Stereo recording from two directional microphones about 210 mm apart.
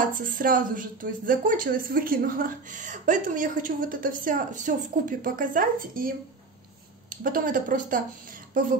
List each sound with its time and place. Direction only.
0.0 s a woman's voice: 40° right (ahead or behind)